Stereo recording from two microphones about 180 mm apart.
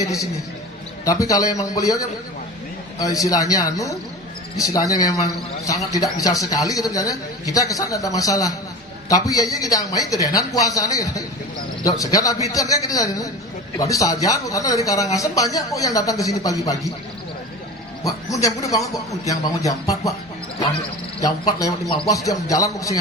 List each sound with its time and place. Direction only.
1.0 s speech: 20° left (ahead or behind)
18.0 s a man's voice: 20° left (ahead or behind)
21.2 s speech: 20° left (ahead or behind)